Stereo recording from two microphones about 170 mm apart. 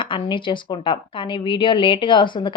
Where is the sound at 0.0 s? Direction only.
30° left (ahead or behind).